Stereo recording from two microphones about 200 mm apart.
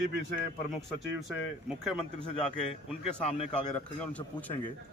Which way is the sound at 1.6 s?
5° right (ahead or behind).